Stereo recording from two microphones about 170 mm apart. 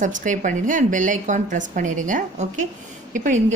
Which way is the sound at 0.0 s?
50° right (ahead or behind).